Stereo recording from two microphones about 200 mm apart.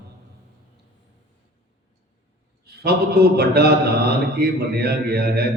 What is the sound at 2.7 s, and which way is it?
A man's voice, 50° right (ahead or behind).